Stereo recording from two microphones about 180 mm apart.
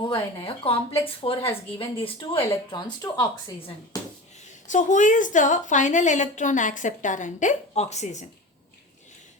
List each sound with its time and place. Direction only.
0.0 s a woman's voice: 25° left (ahead or behind)
4.7 s a woman's voice: 45° left (ahead or behind)